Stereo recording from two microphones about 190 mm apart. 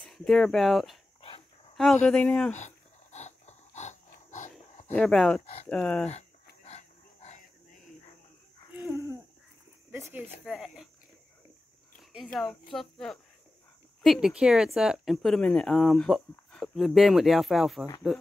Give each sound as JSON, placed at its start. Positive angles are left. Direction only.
{"t": 0.0, "sound": "speech", "side_deg": 0}
{"t": 2.0, "sound": "speech", "side_deg": 5}
{"t": 2.5, "sound": "dog", "side_deg": 35}
{"t": 4.9, "sound": "speech", "side_deg": 5}
{"t": 6.6, "sound": "dog", "side_deg": 35}
{"t": 8.8, "sound": "a sound", "side_deg": -15}
{"t": 9.8, "sound": "speech", "side_deg": -10}
{"t": 10.4, "sound": "speech", "side_deg": 0}
{"t": 12.0, "sound": "speech", "side_deg": 0}